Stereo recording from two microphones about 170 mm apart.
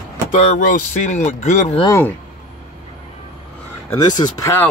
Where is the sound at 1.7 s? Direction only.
20° left (ahead or behind).